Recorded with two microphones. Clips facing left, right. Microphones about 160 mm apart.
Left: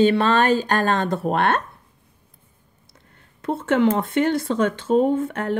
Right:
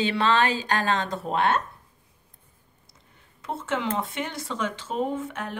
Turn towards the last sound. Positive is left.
turn(degrees=60)  # may be behind; listen again after turning